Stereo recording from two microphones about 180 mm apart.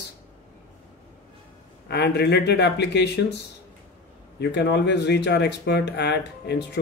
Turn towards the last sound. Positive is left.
turn(degrees=70)  # may be behind; listen again after turning